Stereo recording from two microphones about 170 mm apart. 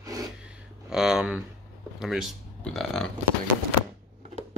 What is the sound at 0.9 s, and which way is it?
Speech, 5° right (ahead or behind).